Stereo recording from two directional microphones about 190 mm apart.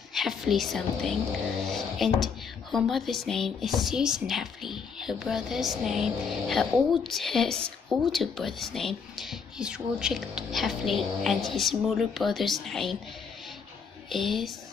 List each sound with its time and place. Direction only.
0.1 s a woman's voice: centre (ahead or behind)
14.0 s a woman's voice: centre (ahead or behind)